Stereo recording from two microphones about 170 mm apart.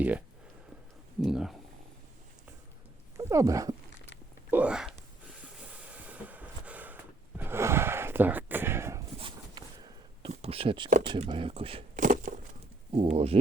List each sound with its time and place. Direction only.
1.2 s speech: centre (ahead or behind)
3.2 s speech: 20° right (ahead or behind)
4.5 s speech: 5° right (ahead or behind)
5.4 s vehicle: 5° right (ahead or behind)
9.1 s a sound: 30° right (ahead or behind)
11.0 s speech: 30° right (ahead or behind)
11.9 s a sound: 50° right (ahead or behind)
12.9 s speech: 35° right (ahead or behind)